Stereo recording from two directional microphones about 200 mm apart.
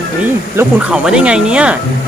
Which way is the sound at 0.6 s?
5° right (ahead or behind).